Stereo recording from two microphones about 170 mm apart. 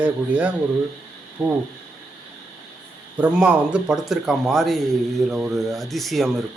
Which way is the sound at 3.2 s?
5° right (ahead or behind).